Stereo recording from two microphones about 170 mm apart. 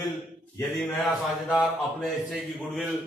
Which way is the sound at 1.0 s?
Centre (ahead or behind).